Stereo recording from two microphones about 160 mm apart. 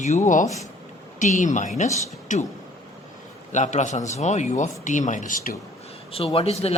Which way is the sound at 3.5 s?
50° left (ahead or behind).